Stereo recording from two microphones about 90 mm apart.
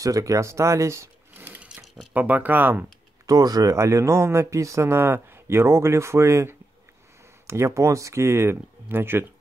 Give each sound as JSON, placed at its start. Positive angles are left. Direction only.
{"t": 0.0, "sound": "speech", "side_deg": -40}
{"t": 1.3, "sound": "sewing machine", "side_deg": -20}
{"t": 2.1, "sound": "speech", "side_deg": -20}
{"t": 3.3, "sound": "speech", "side_deg": -45}